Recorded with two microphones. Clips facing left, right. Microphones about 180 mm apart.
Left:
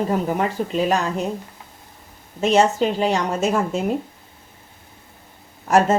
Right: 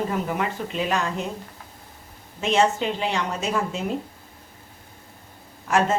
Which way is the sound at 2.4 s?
40° left (ahead or behind).